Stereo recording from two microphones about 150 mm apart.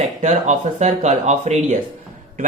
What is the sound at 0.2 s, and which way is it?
Speech, 55° right (ahead or behind).